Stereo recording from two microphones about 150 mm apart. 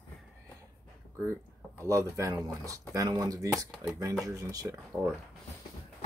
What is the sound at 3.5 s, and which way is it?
Speech, 5° right (ahead or behind).